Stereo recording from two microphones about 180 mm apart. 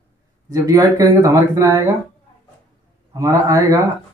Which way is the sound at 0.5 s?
20° right (ahead or behind).